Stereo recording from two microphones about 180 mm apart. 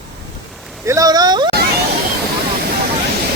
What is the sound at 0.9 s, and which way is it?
Speech, 20° right (ahead or behind).